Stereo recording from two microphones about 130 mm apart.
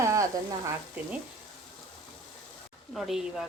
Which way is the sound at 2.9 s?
Centre (ahead or behind).